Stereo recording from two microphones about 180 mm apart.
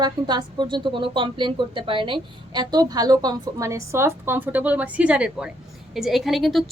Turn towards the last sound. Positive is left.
turn(degrees=0)  # may be behind; listen again after turning